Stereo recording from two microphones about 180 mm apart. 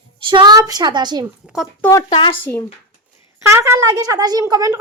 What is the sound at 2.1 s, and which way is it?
Speech, 30° left (ahead or behind).